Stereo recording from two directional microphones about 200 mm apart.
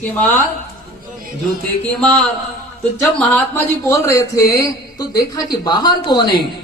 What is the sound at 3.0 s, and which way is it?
Speech, 10° left (ahead or behind).